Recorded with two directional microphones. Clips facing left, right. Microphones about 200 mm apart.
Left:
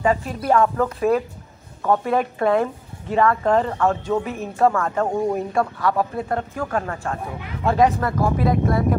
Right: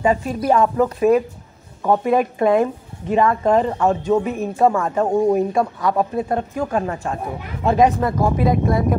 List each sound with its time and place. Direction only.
0.0 s a woman's voice: 20° right (ahead or behind)